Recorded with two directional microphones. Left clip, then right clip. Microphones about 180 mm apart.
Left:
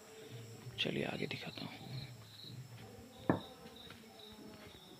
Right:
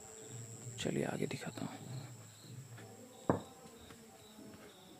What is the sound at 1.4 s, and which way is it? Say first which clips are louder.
Speech: right 1 dB; 45° right (ahead or behind).